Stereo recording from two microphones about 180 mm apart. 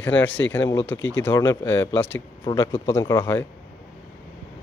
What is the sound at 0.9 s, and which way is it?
Speech, 90° left.